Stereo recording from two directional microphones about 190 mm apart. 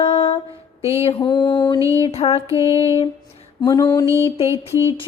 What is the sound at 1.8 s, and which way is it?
Music, 15° right (ahead or behind).